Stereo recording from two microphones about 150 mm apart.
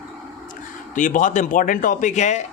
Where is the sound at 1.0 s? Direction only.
60° left (ahead or behind).